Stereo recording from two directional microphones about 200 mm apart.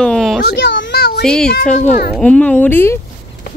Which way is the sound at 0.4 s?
55° left (ahead or behind).